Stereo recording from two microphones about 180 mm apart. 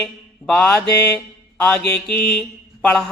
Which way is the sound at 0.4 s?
10° left (ahead or behind).